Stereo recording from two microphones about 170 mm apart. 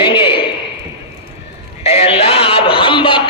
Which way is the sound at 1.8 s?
35° left (ahead or behind).